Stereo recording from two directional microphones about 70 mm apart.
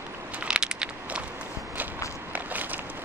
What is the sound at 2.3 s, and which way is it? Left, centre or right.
Walk, right.